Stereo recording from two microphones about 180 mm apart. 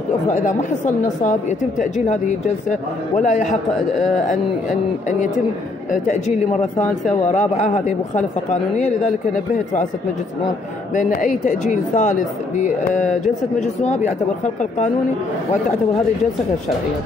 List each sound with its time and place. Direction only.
0.3 s speech: 40° left (ahead or behind)
5.9 s speech: 45° left (ahead or behind)
11.0 s speech: 45° left (ahead or behind)